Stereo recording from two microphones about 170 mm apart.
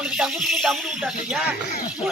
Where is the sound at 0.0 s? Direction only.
5° right (ahead or behind).